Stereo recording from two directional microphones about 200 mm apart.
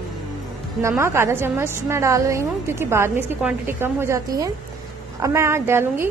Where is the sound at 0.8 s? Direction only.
15° right (ahead or behind).